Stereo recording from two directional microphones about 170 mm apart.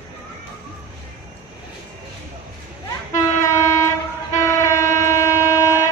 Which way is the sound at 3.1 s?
15° left (ahead or behind).